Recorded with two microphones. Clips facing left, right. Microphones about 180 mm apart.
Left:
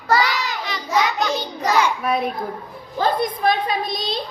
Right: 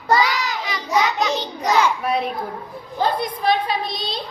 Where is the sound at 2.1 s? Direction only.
45° left (ahead or behind).